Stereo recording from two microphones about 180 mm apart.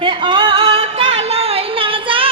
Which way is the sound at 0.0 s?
25° right (ahead or behind).